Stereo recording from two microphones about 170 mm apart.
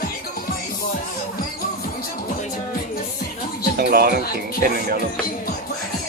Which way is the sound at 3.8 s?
65° right (ahead or behind).